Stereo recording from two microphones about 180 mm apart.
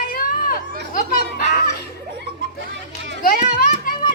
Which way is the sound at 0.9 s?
40° left (ahead or behind).